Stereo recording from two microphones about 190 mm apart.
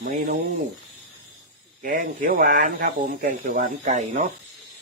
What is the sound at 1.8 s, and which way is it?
Speech, 45° right (ahead or behind).